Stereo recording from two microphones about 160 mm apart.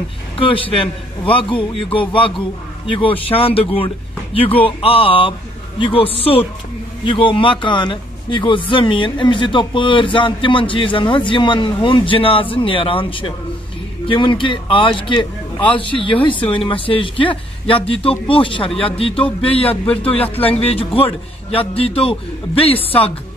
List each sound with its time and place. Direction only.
0.4 s a man's voice: 35° left (ahead or behind)
20.1 s a man's voice: 10° left (ahead or behind)
20.3 s a man's voice: 35° left (ahead or behind)